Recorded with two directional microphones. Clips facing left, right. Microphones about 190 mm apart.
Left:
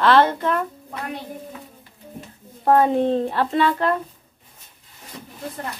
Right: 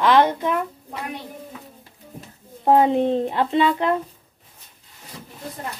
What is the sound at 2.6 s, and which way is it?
Speech, 20° right (ahead or behind).